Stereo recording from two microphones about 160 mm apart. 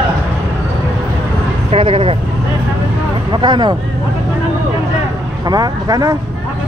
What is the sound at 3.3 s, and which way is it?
Speech, 30° right (ahead or behind).